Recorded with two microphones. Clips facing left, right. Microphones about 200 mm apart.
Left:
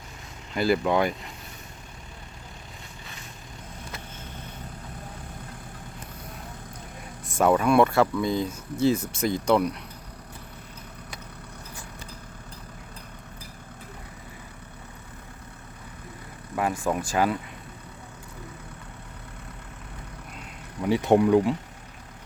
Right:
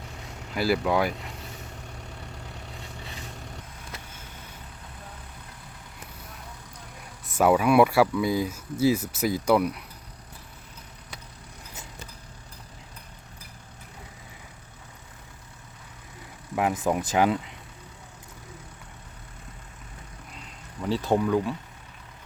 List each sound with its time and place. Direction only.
0.5 s speech: 5° right (ahead or behind)
7.3 s speech: 5° right (ahead or behind)
16.6 s speech: 15° right (ahead or behind)
20.8 s speech: 15° left (ahead or behind)